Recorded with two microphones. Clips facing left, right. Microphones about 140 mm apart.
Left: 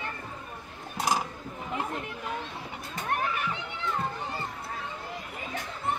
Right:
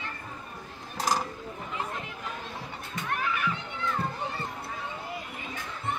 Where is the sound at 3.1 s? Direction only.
45° left (ahead or behind).